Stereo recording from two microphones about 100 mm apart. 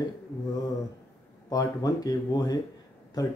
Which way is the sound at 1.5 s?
35° left (ahead or behind).